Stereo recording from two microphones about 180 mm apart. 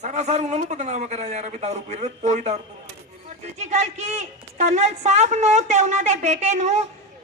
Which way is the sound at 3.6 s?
35° right (ahead or behind).